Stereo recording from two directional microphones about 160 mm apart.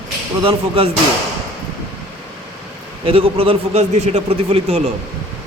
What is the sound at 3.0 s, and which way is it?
A man's voice, 35° right (ahead or behind).